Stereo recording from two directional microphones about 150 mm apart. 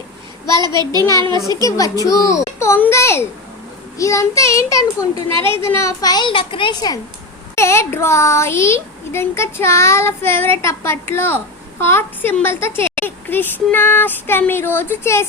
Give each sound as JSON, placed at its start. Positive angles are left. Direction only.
{"t": 0.6, "sound": "a child's voice", "side_deg": -30}
{"t": 1.6, "sound": "a child's voice", "side_deg": 25}
{"t": 7.5, "sound": "a child's voice", "side_deg": 20}